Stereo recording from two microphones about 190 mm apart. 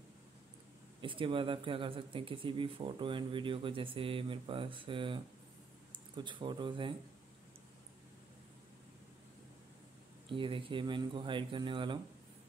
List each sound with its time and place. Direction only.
1.0 s speech: 25° right (ahead or behind)
10.3 s speech: 25° right (ahead or behind)